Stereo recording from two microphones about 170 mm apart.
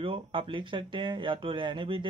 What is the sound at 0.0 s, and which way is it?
Speech, 30° right (ahead or behind).